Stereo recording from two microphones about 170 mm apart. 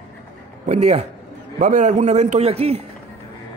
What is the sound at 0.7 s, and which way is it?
A man's voice, 40° right (ahead or behind).